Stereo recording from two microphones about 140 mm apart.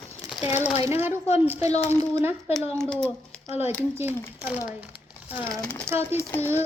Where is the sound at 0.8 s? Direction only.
15° right (ahead or behind).